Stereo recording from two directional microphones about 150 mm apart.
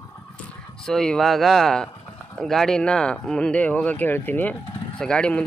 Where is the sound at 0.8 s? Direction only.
5° left (ahead or behind).